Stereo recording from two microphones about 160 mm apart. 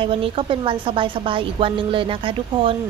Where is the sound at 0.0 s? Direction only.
35° right (ahead or behind).